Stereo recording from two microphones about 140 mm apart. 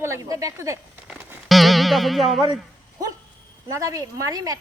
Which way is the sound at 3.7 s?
25° right (ahead or behind).